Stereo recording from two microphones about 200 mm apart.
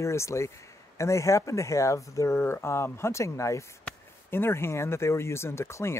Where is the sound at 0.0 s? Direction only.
15° left (ahead or behind).